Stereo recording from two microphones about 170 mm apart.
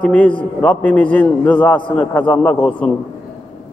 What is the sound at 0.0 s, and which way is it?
A man's voice, 10° left (ahead or behind).